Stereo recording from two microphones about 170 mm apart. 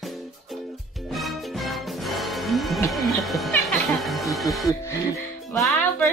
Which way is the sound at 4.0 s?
Centre (ahead or behind).